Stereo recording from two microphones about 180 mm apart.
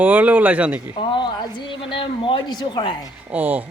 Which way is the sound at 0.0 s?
10° right (ahead or behind).